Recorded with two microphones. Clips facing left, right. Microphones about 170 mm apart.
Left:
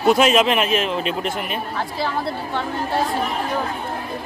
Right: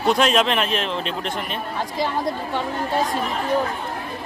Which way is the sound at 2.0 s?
15° right (ahead or behind).